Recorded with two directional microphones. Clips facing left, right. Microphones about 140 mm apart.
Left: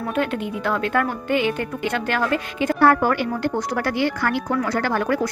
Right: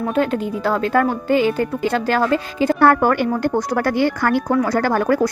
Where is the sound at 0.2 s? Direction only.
35° right (ahead or behind).